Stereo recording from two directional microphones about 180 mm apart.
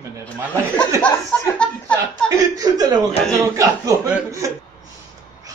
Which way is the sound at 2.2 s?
20° right (ahead or behind).